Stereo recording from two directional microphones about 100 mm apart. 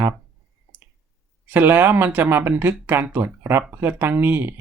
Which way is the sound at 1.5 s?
20° right (ahead or behind).